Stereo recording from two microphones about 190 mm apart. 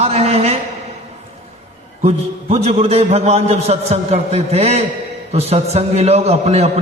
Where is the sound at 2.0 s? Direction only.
35° right (ahead or behind).